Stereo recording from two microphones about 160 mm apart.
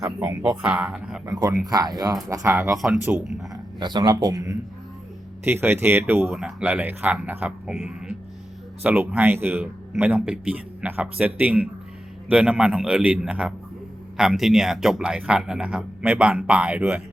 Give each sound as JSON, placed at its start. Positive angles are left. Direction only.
{"t": 0.2, "sound": "speech", "side_deg": -10}
{"t": 1.2, "sound": "speech", "side_deg": -20}
{"t": 2.7, "sound": "a man's voice", "side_deg": 0}
{"t": 3.5, "sound": "speech", "side_deg": -25}
{"t": 5.5, "sound": "a man's voice", "side_deg": -15}